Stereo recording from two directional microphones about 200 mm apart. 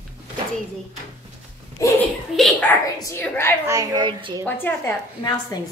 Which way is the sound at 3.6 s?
15° right (ahead or behind).